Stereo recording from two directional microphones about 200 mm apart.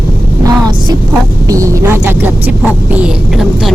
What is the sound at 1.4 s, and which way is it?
A woman's voice, 15° right (ahead or behind).